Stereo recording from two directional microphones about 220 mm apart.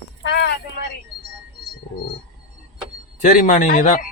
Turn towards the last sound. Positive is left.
turn(degrees=35)  # may be behind; listen again after turning